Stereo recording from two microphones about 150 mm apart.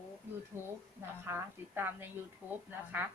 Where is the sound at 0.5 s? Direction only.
15° right (ahead or behind).